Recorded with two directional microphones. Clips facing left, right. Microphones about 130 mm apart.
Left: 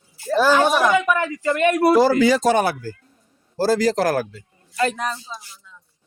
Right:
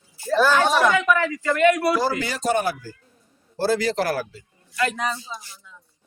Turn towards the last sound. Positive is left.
turn(degrees=0)  # may be behind; listen again after turning